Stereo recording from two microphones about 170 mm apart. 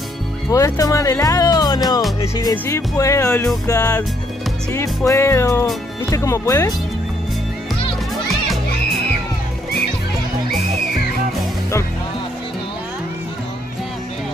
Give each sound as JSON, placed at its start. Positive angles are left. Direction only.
{"t": 0.5, "sound": "speech", "side_deg": 20}
{"t": 2.5, "sound": "music", "side_deg": 15}
{"t": 3.6, "sound": "speech", "side_deg": 20}
{"t": 4.7, "sound": "music", "side_deg": 15}
{"t": 6.0, "sound": "speech", "side_deg": 20}